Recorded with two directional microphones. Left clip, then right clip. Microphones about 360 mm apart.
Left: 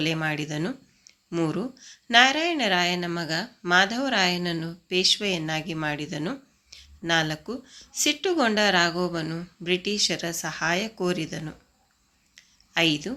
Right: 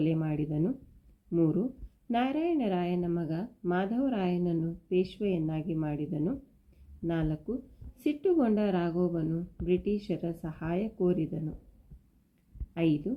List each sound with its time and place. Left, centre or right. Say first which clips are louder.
0.0 s a woman's voice: left 5 dB; left
12.7 s speech: left 7 dB; left